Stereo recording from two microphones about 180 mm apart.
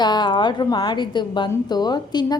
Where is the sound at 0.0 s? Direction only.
25° left (ahead or behind).